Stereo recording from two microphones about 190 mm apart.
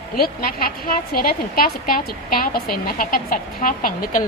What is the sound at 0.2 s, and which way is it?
A woman's voice, 50° left (ahead or behind).